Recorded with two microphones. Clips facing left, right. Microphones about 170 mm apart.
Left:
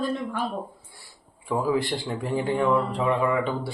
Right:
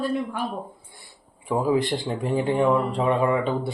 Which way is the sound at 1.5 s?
20° right (ahead or behind).